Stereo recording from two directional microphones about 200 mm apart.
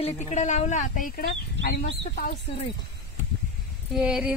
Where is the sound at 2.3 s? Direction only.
30° left (ahead or behind).